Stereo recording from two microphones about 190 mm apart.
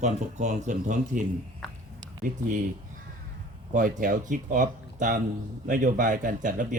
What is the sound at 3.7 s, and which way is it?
Speech, 45° right (ahead or behind).